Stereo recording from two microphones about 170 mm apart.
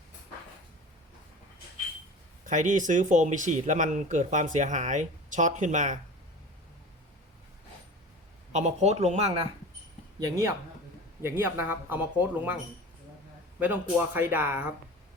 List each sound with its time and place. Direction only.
2.4 s speech: 50° right (ahead or behind)
8.5 s speech: 40° right (ahead or behind)
10.2 s speech: 20° right (ahead or behind)
13.6 s speech: 10° right (ahead or behind)